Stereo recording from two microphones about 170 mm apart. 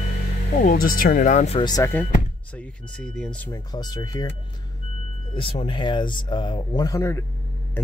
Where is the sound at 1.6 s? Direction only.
20° left (ahead or behind).